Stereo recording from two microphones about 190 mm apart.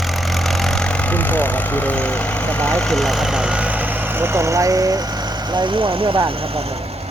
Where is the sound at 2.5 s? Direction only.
5° left (ahead or behind); by 6.3 s 30° right (ahead or behind).